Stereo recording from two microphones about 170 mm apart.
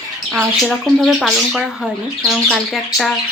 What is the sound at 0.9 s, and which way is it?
Speech, centre (ahead or behind).